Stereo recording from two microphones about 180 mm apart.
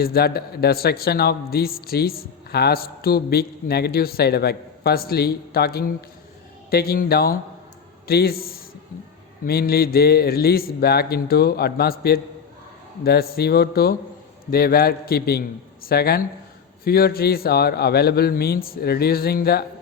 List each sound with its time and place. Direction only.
0.0 s a man's voice: 60° left (ahead or behind)